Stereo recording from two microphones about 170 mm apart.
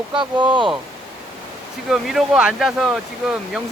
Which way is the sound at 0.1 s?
30° right (ahead or behind).